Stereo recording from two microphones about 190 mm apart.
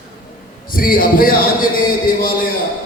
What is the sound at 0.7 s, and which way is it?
Chant, 50° left (ahead or behind).